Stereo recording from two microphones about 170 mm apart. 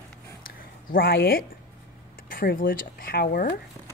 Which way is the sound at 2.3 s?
55° left (ahead or behind).